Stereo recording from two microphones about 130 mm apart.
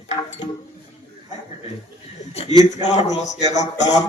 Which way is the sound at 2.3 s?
50° left (ahead or behind).